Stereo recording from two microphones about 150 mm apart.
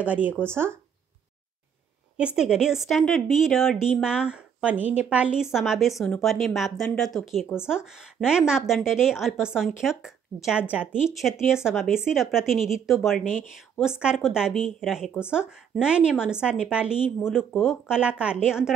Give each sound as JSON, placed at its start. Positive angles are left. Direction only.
{"t": 0.0, "sound": "speech", "side_deg": -10}
{"t": 2.1, "sound": "a woman's voice", "side_deg": -5}